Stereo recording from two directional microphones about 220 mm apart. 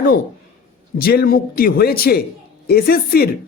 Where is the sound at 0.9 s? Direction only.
45° left (ahead or behind).